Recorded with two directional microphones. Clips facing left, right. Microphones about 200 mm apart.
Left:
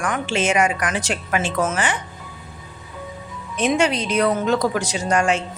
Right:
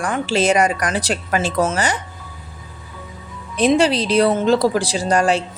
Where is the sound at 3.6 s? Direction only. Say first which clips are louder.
Right 4 dB; 35° right (ahead or behind).